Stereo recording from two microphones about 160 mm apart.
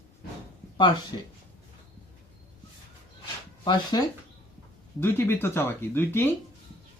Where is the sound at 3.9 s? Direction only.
25° left (ahead or behind).